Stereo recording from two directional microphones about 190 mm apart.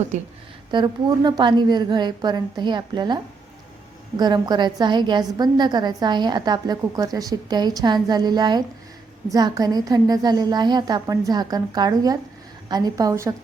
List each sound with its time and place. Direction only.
0.1 s speech: 40° right (ahead or behind)
0.7 s a woman's voice: 25° right (ahead or behind)
4.2 s a woman's voice: 20° right (ahead or behind)